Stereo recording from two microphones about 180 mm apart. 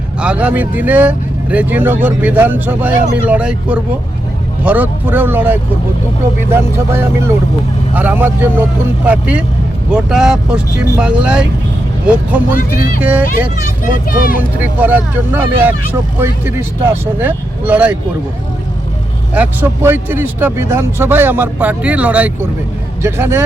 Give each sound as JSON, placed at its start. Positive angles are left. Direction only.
{"t": 0.2, "sound": "speech", "side_deg": -5}
{"t": 12.5, "sound": "speech", "side_deg": 50}
{"t": 13.0, "sound": "speech", "side_deg": -10}
{"t": 14.6, "sound": "speech", "side_deg": -10}
{"t": 19.3, "sound": "speech", "side_deg": -10}